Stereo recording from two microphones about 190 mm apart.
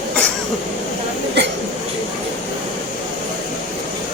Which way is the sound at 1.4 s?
65° right (ahead or behind).